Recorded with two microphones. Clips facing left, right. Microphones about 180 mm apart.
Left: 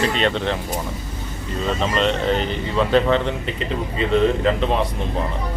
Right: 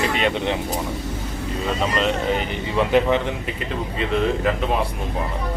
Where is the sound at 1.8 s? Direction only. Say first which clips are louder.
Left 1 dB; 5° right (ahead or behind).